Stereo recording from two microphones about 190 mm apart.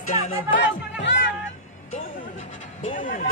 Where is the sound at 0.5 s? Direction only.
65° left (ahead or behind).